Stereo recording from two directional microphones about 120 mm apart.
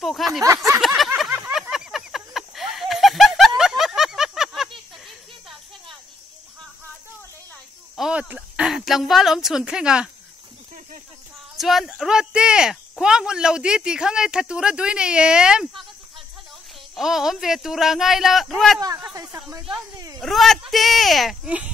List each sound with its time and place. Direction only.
0.0 s speech: centre (ahead or behind)
0.7 s a sound: centre (ahead or behind)
7.9 s a sound: 5° right (ahead or behind)
11.5 s speech: centre (ahead or behind)
16.9 s speech: 5° right (ahead or behind)
18.8 s speech: 30° right (ahead or behind)
20.2 s speech: centre (ahead or behind)